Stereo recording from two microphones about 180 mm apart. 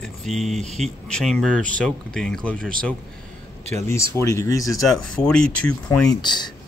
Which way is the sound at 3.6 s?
35° right (ahead or behind).